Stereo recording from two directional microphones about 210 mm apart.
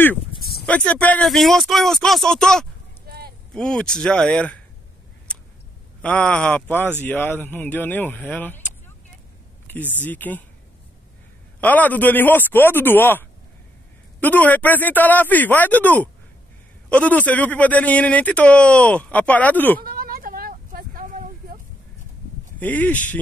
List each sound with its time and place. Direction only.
0.4 s a sound: 50° left (ahead or behind)
0.7 s speech: 5° left (ahead or behind)
3.1 s a sound: 50° right (ahead or behind)
3.5 s speech: 5° left (ahead or behind)
6.0 s speech: 5° left (ahead or behind)
10.0 s speech: 10° left (ahead or behind)
11.6 s speech: 10° left (ahead or behind)
19.8 s a sound: 45° right (ahead or behind)
22.6 s speech: 10° left (ahead or behind)